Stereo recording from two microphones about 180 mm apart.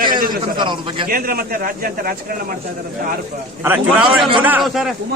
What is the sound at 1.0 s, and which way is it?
Speech, 55° right (ahead or behind).